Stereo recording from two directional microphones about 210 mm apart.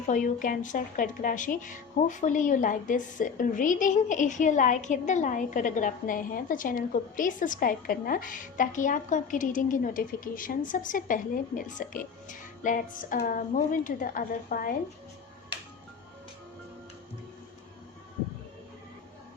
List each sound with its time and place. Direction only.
0.1 s speech: 40° left (ahead or behind)